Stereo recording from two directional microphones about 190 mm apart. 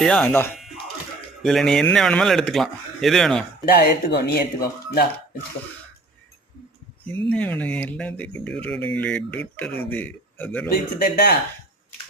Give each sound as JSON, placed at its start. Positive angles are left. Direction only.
{"t": 0.0, "sound": "speech", "side_deg": 5}
{"t": 1.4, "sound": "speech", "side_deg": 0}
{"t": 3.7, "sound": "speech", "side_deg": 55}
{"t": 7.3, "sound": "a man's voice", "side_deg": 10}
{"t": 10.7, "sound": "speech", "side_deg": 55}